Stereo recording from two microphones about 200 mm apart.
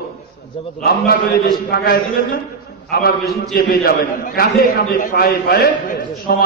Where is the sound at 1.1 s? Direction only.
50° left (ahead or behind).